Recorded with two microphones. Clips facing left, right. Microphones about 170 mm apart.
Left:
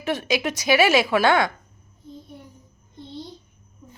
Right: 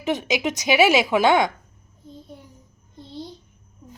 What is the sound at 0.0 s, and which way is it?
A woman's voice, 20° right (ahead or behind).